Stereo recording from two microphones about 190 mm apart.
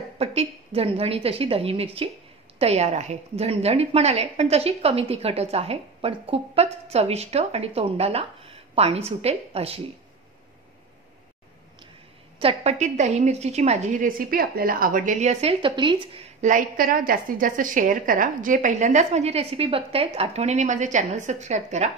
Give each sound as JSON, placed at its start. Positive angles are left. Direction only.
{"t": 0.2, "sound": "a woman's voice", "side_deg": -30}
{"t": 12.4, "sound": "a woman's voice", "side_deg": -30}
{"t": 16.3, "sound": "a woman's voice", "side_deg": -40}